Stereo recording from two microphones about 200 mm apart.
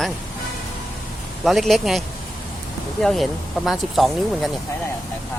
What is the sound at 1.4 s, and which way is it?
Speech, centre (ahead or behind).